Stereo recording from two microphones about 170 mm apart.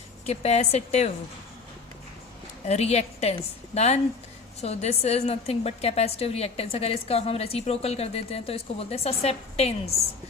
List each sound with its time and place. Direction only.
0.3 s a woman's voice: 40° left (ahead or behind)
2.6 s a woman's voice: 40° left (ahead or behind)